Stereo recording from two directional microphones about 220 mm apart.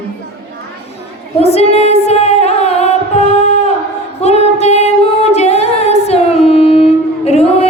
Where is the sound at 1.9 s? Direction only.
30° left (ahead or behind).